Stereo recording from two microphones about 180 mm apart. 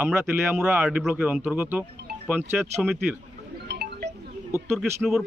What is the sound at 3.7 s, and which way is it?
Music, 65° right (ahead or behind).